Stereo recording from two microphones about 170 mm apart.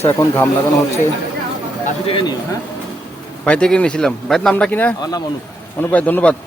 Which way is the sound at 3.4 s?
5° left (ahead or behind).